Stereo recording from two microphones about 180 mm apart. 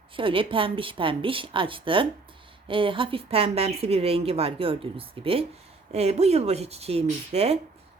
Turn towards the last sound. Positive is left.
turn(degrees=-35)  # may be behind; listen again after turning